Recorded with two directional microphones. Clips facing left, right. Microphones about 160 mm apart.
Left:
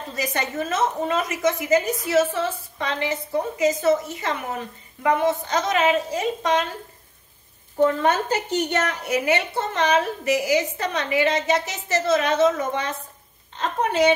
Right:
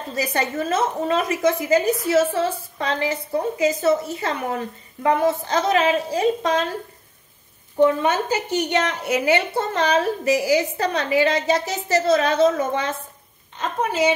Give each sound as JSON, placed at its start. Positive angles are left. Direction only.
{"t": 0.1, "sound": "a woman's voice", "side_deg": -35}
{"t": 7.8, "sound": "a woman's voice", "side_deg": -10}
{"t": 9.0, "sound": "a woman's voice", "side_deg": -30}